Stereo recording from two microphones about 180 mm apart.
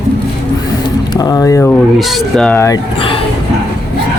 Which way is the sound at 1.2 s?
20° left (ahead or behind).